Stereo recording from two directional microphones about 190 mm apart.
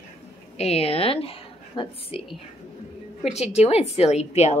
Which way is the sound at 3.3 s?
35° left (ahead or behind).